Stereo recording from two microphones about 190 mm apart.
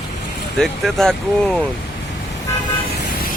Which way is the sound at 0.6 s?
Centre (ahead or behind).